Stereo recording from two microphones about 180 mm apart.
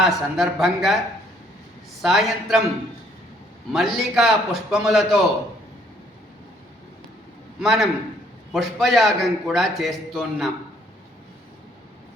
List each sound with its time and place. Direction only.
0.0 s a man's voice: centre (ahead or behind)
2.0 s a man's voice: centre (ahead or behind)
3.7 s a man's voice: centre (ahead or behind)
7.6 s a man's voice: centre (ahead or behind)